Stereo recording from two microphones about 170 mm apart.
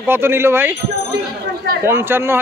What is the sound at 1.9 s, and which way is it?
Speech, 15° right (ahead or behind).